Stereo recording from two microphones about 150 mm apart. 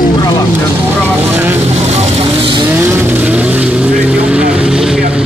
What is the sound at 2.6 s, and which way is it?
Vehicle, 15° right (ahead or behind).